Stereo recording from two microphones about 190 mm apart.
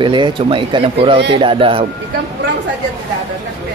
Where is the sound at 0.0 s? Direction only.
25° right (ahead or behind).